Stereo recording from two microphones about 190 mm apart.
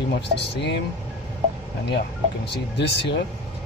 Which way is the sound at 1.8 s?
65° left (ahead or behind).